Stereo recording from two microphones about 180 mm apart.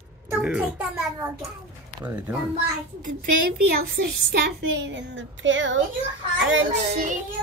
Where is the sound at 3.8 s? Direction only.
60° right (ahead or behind); by 7.0 s 85° right.